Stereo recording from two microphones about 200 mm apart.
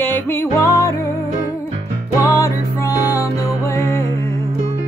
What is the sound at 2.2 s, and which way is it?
Music, 15° left (ahead or behind).